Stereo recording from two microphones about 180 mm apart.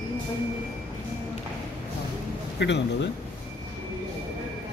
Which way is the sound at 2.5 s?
75° left (ahead or behind).